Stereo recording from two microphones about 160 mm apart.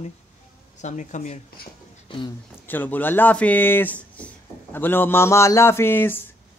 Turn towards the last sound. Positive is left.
turn(degrees=15)  # may be behind; listen again after turning